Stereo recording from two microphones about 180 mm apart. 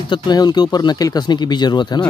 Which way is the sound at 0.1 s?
25° left (ahead or behind).